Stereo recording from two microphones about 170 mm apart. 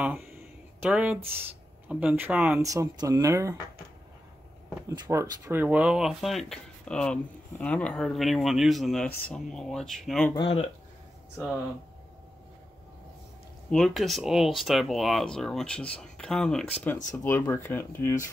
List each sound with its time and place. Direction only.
0.8 s speech: 5° right (ahead or behind)
2.6 s speech: 20° right (ahead or behind)
4.8 s speech: 20° right (ahead or behind); by 10.3 s 5° left (ahead or behind)
13.7 s speech: 5° left (ahead or behind)